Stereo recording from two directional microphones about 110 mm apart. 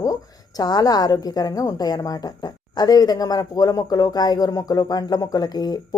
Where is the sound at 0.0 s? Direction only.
35° left (ahead or behind).